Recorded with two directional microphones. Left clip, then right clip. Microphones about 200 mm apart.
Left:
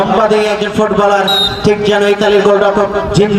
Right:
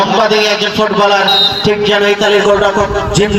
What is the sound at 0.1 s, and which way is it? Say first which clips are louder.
A man's voice: even; 60° left (ahead or behind).